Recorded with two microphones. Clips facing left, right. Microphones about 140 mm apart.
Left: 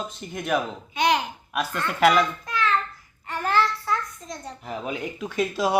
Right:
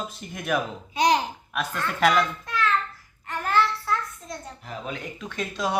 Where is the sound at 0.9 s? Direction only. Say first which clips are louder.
Right 1 dB; 35° right (ahead or behind).